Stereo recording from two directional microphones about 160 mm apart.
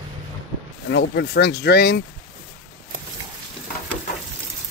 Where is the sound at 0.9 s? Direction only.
90° left.